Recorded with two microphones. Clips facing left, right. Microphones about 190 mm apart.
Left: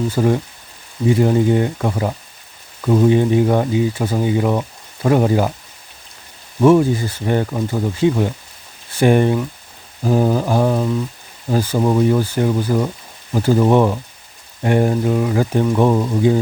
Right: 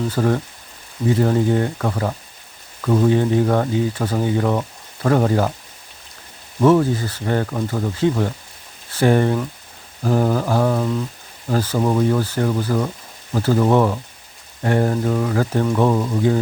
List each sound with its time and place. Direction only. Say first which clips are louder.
0.1 s speech: left 2 dB; 15° left (ahead or behind)
6.6 s speech: left 3 dB; 10° left (ahead or behind)